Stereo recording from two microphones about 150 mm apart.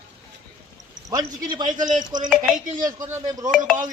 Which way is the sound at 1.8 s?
60° right (ahead or behind).